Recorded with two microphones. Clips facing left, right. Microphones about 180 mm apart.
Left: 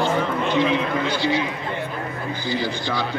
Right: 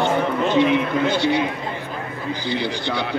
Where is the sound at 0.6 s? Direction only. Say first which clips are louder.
Right 4 dB; 60° right (ahead or behind).